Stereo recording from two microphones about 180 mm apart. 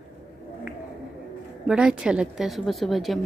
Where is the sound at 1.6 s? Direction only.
5° right (ahead or behind).